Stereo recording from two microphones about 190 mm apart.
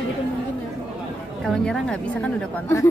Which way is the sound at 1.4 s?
5° left (ahead or behind).